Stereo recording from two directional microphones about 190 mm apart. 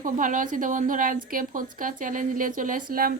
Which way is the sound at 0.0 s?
45° right (ahead or behind).